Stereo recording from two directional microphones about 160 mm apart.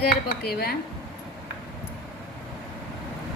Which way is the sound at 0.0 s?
75° left (ahead or behind).